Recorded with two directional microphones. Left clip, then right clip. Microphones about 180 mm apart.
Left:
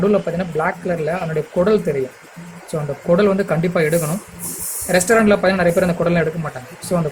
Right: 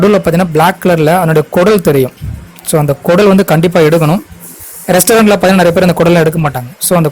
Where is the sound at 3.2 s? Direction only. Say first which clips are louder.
Right 9 dB; 60° right (ahead or behind).